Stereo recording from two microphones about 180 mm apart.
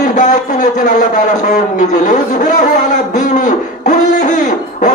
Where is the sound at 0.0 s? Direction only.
45° left (ahead or behind).